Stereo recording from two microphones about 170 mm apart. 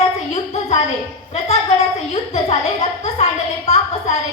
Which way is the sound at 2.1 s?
40° left (ahead or behind).